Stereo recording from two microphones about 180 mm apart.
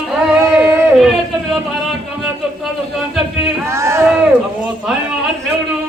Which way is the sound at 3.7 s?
15° right (ahead or behind).